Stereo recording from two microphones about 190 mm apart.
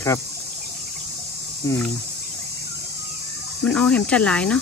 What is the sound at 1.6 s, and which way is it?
Speech, 15° left (ahead or behind).